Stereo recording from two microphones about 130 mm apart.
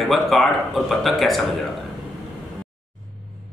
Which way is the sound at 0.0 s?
Centre (ahead or behind).